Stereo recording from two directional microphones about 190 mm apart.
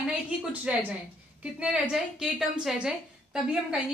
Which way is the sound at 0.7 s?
5° right (ahead or behind).